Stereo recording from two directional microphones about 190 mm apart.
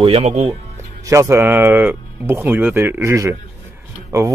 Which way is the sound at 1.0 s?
15° right (ahead or behind).